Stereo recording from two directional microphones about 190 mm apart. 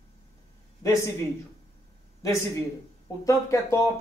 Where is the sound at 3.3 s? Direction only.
15° left (ahead or behind).